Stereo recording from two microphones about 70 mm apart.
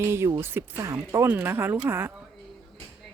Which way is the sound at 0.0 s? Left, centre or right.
Right.